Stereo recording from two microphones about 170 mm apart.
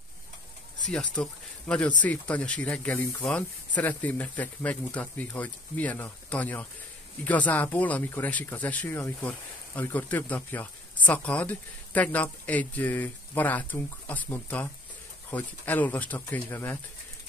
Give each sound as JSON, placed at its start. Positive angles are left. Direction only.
{"t": 0.9, "sound": "speech", "side_deg": 5}